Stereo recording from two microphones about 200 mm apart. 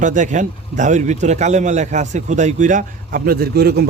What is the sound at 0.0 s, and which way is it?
A man's voice, 40° right (ahead or behind).